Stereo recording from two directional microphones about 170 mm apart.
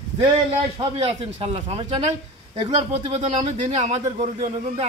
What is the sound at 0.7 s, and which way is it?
Speech, 35° right (ahead or behind).